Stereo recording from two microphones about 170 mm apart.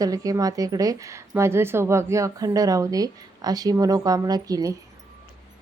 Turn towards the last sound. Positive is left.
turn(degrees=-20)  # may be behind; listen again after turning